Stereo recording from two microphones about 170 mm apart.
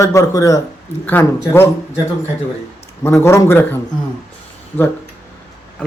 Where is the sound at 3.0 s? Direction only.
15° left (ahead or behind).